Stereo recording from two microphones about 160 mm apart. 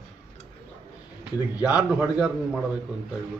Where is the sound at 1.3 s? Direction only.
25° left (ahead or behind).